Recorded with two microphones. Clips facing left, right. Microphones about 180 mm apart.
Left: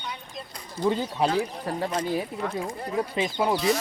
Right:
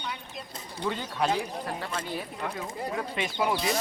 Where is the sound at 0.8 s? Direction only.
30° left (ahead or behind).